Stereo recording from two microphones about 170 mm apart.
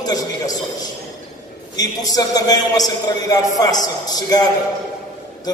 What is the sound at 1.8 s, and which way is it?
A man's voice, 20° left (ahead or behind).